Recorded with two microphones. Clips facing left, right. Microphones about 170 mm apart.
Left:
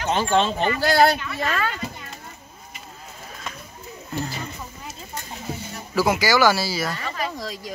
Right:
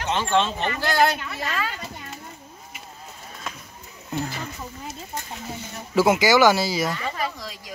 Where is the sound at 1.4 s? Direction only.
55° left (ahead or behind).